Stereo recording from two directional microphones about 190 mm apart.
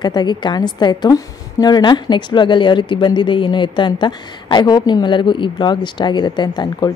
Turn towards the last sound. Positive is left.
turn(degrees=20)  # may be behind; listen again after turning